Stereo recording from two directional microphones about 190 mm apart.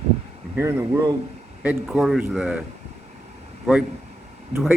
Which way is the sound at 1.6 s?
Centre (ahead or behind).